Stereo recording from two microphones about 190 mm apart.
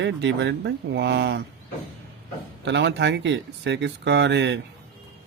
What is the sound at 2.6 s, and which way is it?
Speech, 65° right (ahead or behind).